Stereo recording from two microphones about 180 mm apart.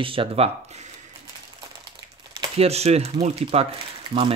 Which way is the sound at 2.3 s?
35° right (ahead or behind).